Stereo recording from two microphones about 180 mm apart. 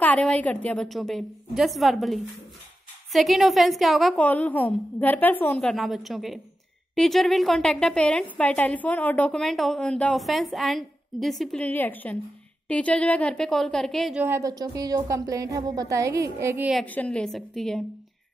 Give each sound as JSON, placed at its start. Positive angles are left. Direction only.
{"t": 0.0, "sound": "a woman's voice", "side_deg": 10}
{"t": 14.2, "sound": "a woman's voice", "side_deg": -15}
{"t": 16.7, "sound": "a woman's voice", "side_deg": 10}